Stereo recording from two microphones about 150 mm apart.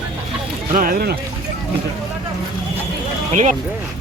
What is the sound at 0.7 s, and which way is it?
Speech, 70° right (ahead or behind).